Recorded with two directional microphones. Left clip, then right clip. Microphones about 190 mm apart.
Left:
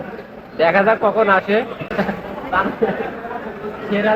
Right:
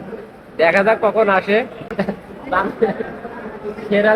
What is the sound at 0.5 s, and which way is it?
Speech, 15° right (ahead or behind).